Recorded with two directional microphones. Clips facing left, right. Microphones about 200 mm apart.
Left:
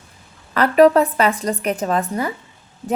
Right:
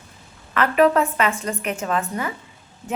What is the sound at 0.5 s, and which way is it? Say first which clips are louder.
A woman's voice: left 5 dB; 35° left (ahead or behind).